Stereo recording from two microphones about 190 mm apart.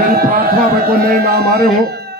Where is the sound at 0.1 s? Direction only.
50° right (ahead or behind).